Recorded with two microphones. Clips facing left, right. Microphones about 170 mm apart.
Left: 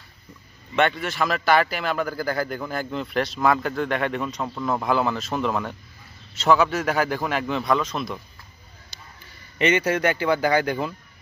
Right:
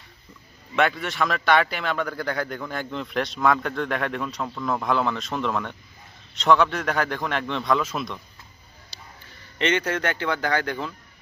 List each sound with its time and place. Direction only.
0.7 s speech: centre (ahead or behind)
8.9 s a sound: 35° right (ahead or behind)
9.6 s speech: 10° left (ahead or behind)